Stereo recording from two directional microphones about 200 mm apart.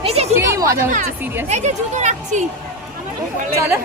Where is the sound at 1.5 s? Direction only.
35° right (ahead or behind).